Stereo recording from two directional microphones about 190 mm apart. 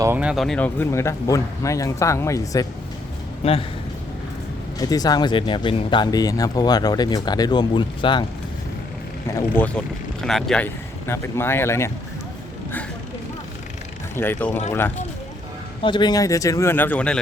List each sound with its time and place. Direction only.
0.0 s speech: 10° right (ahead or behind); by 2.6 s 15° left (ahead or behind)
3.4 s a man's voice: 30° left (ahead or behind)
4.8 s speech: 20° left (ahead or behind)
9.6 s speech: 5° left (ahead or behind)
14.2 s speech: 10° left (ahead or behind)
15.8 s speech: 25° left (ahead or behind); by 17.2 s 10° left (ahead or behind)